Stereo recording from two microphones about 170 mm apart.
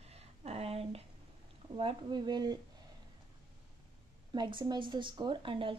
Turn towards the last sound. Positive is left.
turn(degrees=-30)  # may be behind; listen again after turning